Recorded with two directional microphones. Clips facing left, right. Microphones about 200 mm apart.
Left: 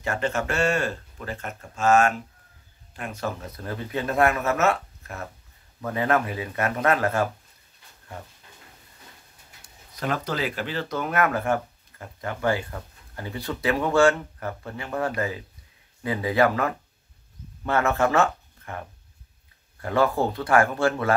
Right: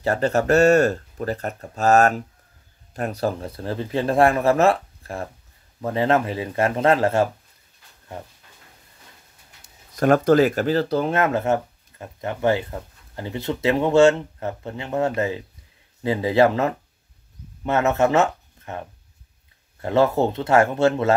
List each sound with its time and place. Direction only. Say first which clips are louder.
0.0 s speech: right 6 dB; 35° right (ahead or behind)
9.9 s speech: right 12 dB; 50° right (ahead or behind); by 21.1 s 20° right (ahead or behind)